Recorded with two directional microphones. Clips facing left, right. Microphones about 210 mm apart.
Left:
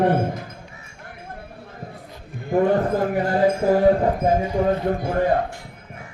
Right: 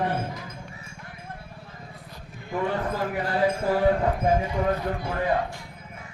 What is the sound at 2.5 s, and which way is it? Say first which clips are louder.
Speech: left 9 dB; 45° left (ahead or behind).